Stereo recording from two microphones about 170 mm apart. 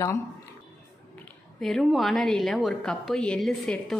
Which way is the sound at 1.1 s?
5° left (ahead or behind).